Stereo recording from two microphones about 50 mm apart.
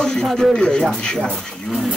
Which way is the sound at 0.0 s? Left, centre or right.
Centre.